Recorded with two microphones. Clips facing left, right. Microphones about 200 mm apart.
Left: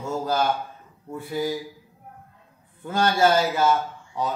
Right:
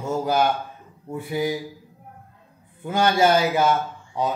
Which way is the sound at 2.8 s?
15° right (ahead or behind).